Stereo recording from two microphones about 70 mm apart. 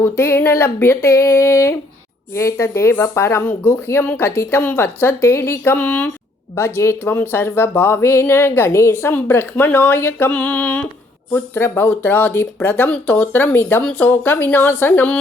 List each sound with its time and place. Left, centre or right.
0.0 s speech: left
4.0 s a woman's voice: left
4.4 s a woman's voice: left
6.6 s a woman's voice: left
13.4 s a woman's voice: left